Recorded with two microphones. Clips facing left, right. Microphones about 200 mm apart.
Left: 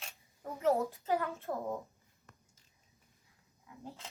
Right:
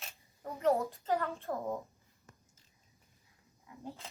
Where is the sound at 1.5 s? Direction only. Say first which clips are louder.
Right 1 dB; centre (ahead or behind).